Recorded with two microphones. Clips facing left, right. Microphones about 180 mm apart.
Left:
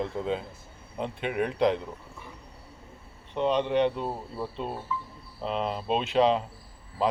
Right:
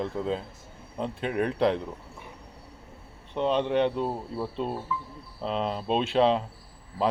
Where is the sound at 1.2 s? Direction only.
40° right (ahead or behind).